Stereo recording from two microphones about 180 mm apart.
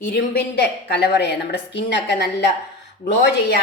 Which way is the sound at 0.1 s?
65° left (ahead or behind).